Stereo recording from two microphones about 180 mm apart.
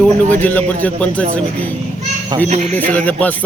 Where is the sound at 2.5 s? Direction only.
40° right (ahead or behind).